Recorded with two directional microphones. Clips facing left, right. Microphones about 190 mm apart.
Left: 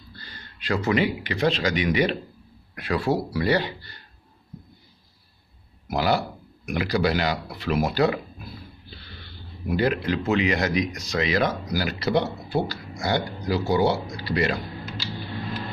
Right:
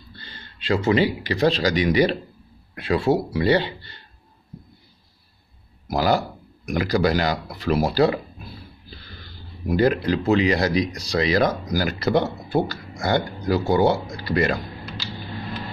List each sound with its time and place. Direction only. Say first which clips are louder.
0.1 s speech: right 2 dB; 25° right (ahead or behind)
2.7 s speech: right 4 dB; 25° right (ahead or behind)
5.9 s speech: right 3 dB; 40° right (ahead or behind)
9.2 s speech: right 2 dB; 40° right (ahead or behind)